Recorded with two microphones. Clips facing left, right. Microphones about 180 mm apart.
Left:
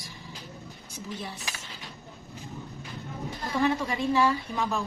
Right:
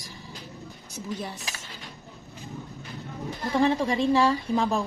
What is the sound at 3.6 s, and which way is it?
A woman's voice, 30° right (ahead or behind).